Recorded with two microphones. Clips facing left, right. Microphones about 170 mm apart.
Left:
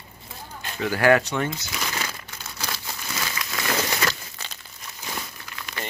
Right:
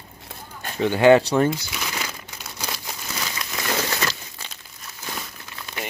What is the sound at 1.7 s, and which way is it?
Crumpling, 10° right (ahead or behind).